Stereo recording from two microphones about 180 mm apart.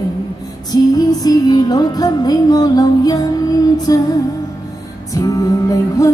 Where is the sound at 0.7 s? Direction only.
20° left (ahead or behind).